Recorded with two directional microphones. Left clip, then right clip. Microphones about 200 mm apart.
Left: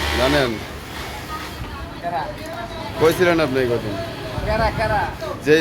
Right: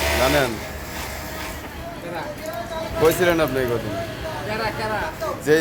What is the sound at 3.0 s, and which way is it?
Speech, 20° left (ahead or behind).